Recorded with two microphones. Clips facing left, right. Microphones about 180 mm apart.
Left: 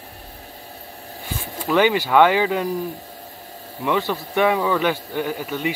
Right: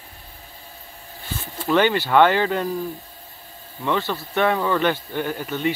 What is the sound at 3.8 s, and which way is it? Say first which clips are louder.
A man's voice: left 2 dB; 10° left (ahead or behind).